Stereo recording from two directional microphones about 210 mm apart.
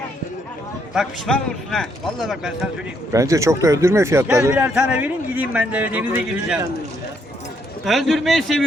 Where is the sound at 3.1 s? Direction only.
15° right (ahead or behind).